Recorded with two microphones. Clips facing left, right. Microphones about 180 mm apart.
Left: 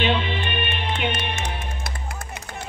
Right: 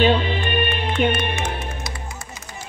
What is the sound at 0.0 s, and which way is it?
Music, 40° right (ahead or behind).